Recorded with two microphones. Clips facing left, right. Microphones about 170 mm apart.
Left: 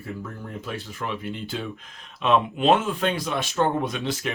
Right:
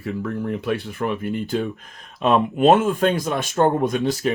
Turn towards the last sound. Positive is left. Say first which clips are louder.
# right 6 dB
turn(degrees=-40)  # may be behind; listen again after turning